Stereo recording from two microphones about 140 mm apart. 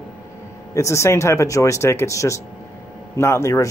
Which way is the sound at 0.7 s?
20° left (ahead or behind).